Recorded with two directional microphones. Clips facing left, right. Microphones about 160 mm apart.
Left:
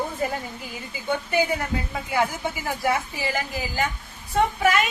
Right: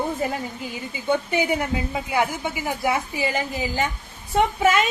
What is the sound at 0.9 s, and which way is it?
A woman's voice, 20° right (ahead or behind).